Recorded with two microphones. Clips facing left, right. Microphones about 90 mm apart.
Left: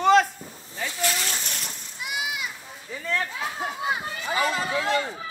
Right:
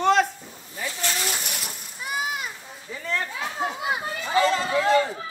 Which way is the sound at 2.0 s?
40° right (ahead or behind).